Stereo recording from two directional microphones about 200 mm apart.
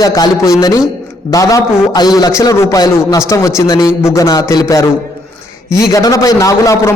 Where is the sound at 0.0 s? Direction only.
20° left (ahead or behind).